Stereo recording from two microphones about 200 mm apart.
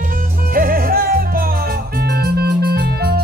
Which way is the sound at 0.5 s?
45° right (ahead or behind).